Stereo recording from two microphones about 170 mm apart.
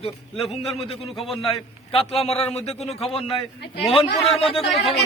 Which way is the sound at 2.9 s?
Centre (ahead or behind).